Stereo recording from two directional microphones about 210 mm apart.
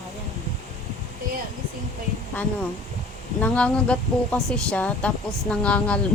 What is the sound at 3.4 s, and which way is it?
Speech, 5° left (ahead or behind).